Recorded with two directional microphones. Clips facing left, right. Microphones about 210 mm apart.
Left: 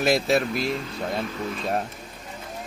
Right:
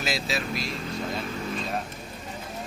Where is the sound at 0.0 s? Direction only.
55° left (ahead or behind).